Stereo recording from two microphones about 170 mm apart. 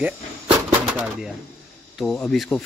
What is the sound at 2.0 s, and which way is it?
Speech, 5° left (ahead or behind).